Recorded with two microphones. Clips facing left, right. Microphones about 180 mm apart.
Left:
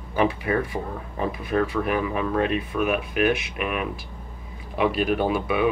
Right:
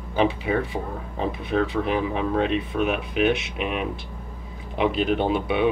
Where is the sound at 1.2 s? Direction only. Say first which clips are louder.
Even; 25° right (ahead or behind).